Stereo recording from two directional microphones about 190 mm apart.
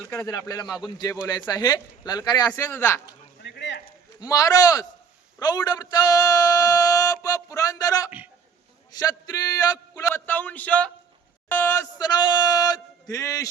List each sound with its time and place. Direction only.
0.1 s speech: 15° left (ahead or behind)
2.5 s a man's voice: 10° left (ahead or behind)
3.4 s a sound: 65° left (ahead or behind)
4.2 s speech: 20° left (ahead or behind)
10.1 s a man's voice: 5° left (ahead or behind)